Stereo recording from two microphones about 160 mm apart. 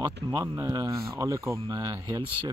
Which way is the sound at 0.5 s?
20° right (ahead or behind).